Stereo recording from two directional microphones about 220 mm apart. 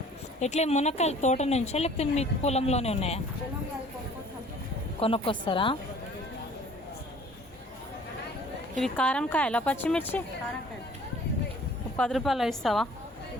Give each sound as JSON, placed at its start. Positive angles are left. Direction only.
{"t": 0.3, "sound": "a woman's voice", "side_deg": 30}
{"t": 4.9, "sound": "a woman's voice", "side_deg": 25}
{"t": 8.7, "sound": "speech", "side_deg": 5}
{"t": 11.9, "sound": "a woman's voice", "side_deg": 0}